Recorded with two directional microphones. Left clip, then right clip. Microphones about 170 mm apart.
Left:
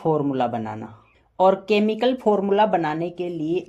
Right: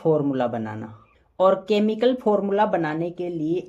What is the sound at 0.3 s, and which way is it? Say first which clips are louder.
Speech: left 1 dB; 20° left (ahead or behind).